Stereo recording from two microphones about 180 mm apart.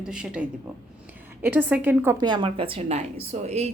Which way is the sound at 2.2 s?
25° right (ahead or behind).